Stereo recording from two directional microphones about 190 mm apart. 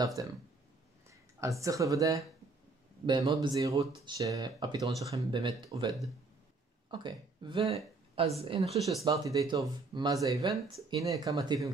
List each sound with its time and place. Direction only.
0.0 s speech: 15° right (ahead or behind)
1.4 s speech: 15° right (ahead or behind)
8.8 s speech: 20° right (ahead or behind)